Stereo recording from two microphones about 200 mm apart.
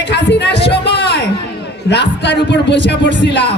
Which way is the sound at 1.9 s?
60° left (ahead or behind).